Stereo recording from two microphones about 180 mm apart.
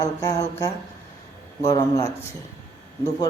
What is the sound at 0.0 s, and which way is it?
A man's voice, 20° left (ahead or behind).